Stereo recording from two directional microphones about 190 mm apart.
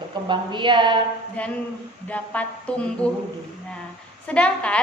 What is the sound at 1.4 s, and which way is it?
Speech, 5° left (ahead or behind).